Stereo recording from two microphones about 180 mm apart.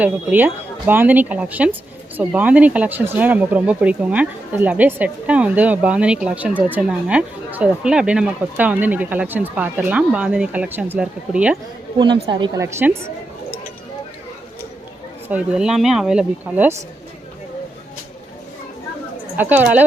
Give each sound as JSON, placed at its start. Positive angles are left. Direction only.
{"t": 0.0, "sound": "speech", "side_deg": -10}
{"t": 12.2, "sound": "a woman's voice", "side_deg": -25}
{"t": 12.6, "sound": "speech", "side_deg": -15}
{"t": 15.3, "sound": "speech", "side_deg": -5}
{"t": 19.4, "sound": "speech", "side_deg": -10}